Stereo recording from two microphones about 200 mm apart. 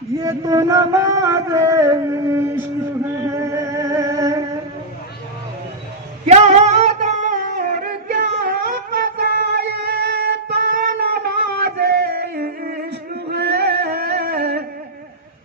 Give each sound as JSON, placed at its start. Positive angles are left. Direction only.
{"t": 0.2, "sound": "music", "side_deg": -15}
{"t": 3.2, "sound": "a sound", "side_deg": -15}
{"t": 6.2, "sound": "singing", "side_deg": -35}
{"t": 13.3, "sound": "music", "side_deg": -55}